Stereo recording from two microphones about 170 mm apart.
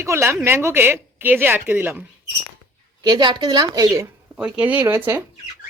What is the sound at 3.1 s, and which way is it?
Speech, 25° right (ahead or behind).